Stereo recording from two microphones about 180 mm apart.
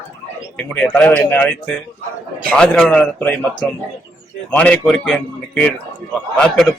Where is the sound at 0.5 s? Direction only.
5° left (ahead or behind).